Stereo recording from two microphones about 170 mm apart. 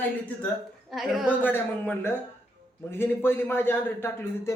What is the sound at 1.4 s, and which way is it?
A man's voice, 10° left (ahead or behind).